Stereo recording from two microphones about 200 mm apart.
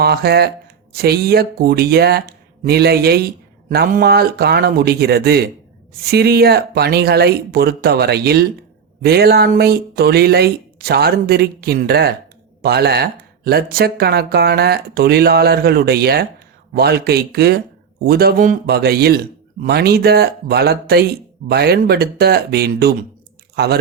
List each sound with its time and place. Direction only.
0.0 s speech: 50° right (ahead or behind)